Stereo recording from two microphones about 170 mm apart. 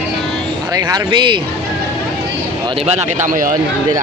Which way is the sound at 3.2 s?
50° right (ahead or behind).